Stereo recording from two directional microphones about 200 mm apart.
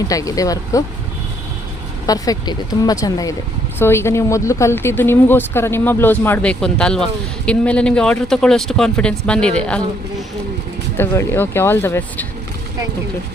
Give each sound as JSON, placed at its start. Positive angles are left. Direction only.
{"t": 0.1, "sound": "speech", "side_deg": 15}
{"t": 2.0, "sound": "speech", "side_deg": 20}
{"t": 10.9, "sound": "speech", "side_deg": 10}